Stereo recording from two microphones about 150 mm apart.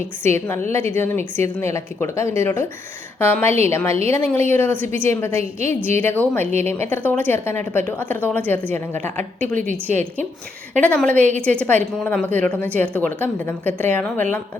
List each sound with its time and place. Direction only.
0.2 s a woman's voice: 15° left (ahead or behind)
10.8 s a woman's voice: 10° left (ahead or behind)